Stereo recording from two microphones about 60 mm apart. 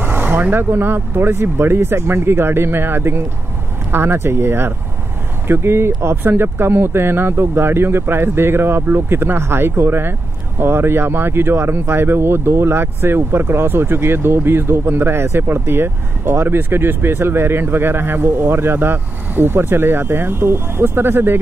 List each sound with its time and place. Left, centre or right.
0.0 s speech: right